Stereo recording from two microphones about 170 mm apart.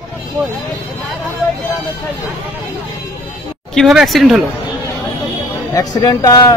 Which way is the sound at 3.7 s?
Centre (ahead or behind).